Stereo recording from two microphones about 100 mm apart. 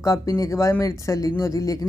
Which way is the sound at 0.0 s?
35° left (ahead or behind).